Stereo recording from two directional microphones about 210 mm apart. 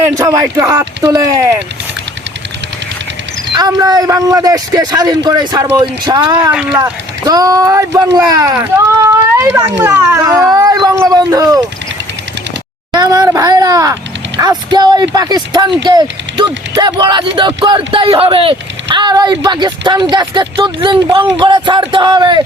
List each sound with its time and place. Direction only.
0.0 s speech: 15° right (ahead or behind)
3.5 s speech: 20° right (ahead or behind)
6.2 s speech: 5° right (ahead or behind)
7.3 s speech: 15° right (ahead or behind)
12.9 s speech: 20° right (ahead or behind)